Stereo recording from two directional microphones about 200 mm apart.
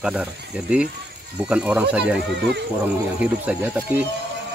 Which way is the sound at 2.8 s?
10° right (ahead or behind).